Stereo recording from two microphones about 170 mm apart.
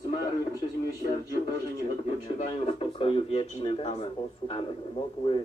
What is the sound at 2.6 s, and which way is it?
A man's voice, 35° left (ahead or behind).